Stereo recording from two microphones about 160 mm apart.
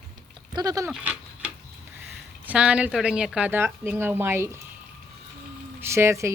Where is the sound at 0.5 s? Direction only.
20° right (ahead or behind).